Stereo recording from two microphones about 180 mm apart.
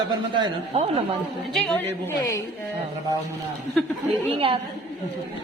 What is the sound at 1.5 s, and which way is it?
Speech, 5° left (ahead or behind).